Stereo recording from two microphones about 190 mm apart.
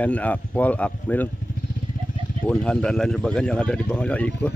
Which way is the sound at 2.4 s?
5° left (ahead or behind).